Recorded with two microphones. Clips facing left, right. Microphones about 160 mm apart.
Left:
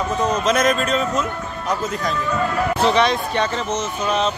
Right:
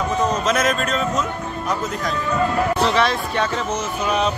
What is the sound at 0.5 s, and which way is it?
Speech, centre (ahead or behind).